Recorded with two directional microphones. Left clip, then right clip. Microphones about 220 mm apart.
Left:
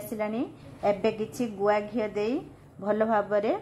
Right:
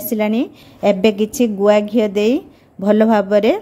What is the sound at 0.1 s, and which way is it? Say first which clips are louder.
A woman's voice: right 13 dB; 45° right (ahead or behind).